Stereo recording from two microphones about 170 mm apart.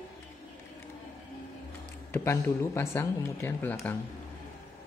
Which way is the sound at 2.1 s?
15° left (ahead or behind).